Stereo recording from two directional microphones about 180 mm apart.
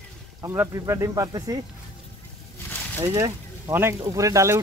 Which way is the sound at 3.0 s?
20° right (ahead or behind).